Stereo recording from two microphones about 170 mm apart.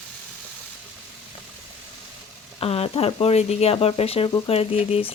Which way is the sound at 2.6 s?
35° left (ahead or behind).